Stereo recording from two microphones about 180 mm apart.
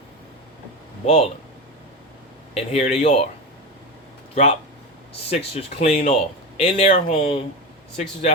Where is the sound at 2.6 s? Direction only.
35° left (ahead or behind).